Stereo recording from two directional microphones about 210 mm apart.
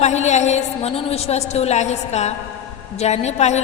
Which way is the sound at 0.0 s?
35° left (ahead or behind).